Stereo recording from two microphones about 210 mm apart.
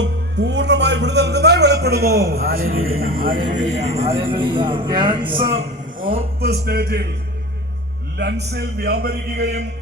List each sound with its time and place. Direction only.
0.0 s a man's voice: 55° right (ahead or behind); by 4.1 s 30° right (ahead or behind)
4.1 s speech: 10° right (ahead or behind)
4.4 s speech: 25° right (ahead or behind)
6.0 s a man's voice: 45° right (ahead or behind)
8.2 s a man's voice: 50° right (ahead or behind)